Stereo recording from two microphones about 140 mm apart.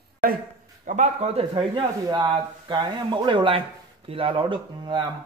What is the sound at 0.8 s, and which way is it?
Speech, 55° right (ahead or behind).